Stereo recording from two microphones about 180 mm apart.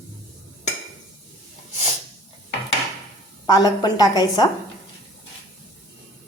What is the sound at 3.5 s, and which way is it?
A woman's voice, 20° left (ahead or behind).